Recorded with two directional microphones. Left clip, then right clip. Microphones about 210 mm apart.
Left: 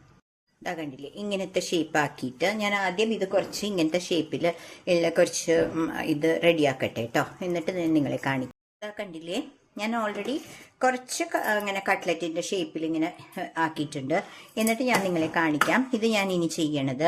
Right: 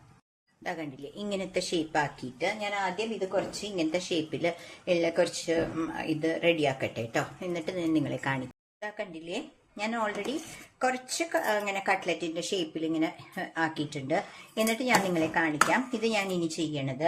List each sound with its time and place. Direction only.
0.6 s speech: 20° left (ahead or behind)
1.1 s speech: 10° left (ahead or behind); by 3.8 s 45° left (ahead or behind)
3.9 s speech: 25° left (ahead or behind)